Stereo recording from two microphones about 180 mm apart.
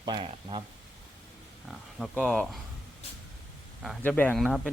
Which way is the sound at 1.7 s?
Centre (ahead or behind).